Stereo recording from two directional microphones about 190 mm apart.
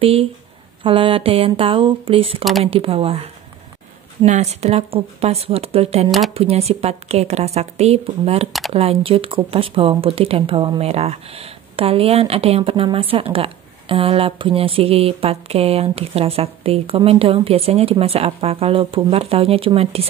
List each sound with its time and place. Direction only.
0.0 s speech: 30° right (ahead or behind)